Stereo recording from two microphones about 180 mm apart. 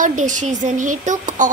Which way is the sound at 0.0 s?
45° right (ahead or behind).